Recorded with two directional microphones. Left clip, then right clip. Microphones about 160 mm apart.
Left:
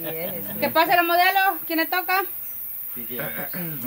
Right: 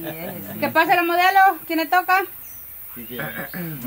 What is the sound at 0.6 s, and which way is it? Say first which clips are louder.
Speech: right 1 dB; 15° right (ahead or behind).